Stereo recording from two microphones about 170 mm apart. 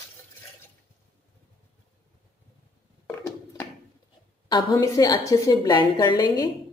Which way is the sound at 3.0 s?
15° left (ahead or behind).